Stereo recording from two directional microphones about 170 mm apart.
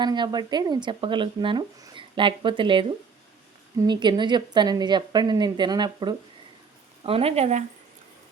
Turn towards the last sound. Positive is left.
turn(degrees=-40)  # may be behind; listen again after turning